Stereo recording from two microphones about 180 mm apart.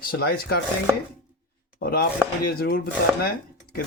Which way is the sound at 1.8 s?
60° left (ahead or behind).